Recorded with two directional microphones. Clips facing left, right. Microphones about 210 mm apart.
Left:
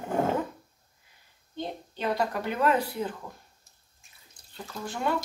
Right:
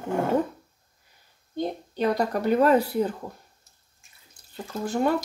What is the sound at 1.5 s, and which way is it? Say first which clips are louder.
Speech: right 6 dB; 45° right (ahead or behind).